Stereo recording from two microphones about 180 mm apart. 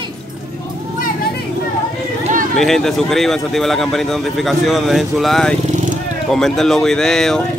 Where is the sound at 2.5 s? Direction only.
Centre (ahead or behind).